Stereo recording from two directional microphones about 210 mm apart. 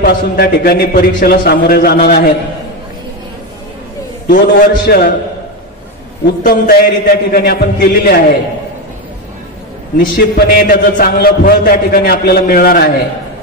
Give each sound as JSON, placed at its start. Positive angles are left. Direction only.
{"t": 0.0, "sound": "a man's voice", "side_deg": 45}
{"t": 4.3, "sound": "a man's voice", "side_deg": 45}
{"t": 6.4, "sound": "a man's voice", "side_deg": 45}
{"t": 9.9, "sound": "a man's voice", "side_deg": 45}